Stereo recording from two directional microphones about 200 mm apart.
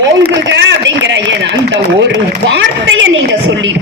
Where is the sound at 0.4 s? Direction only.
65° right (ahead or behind).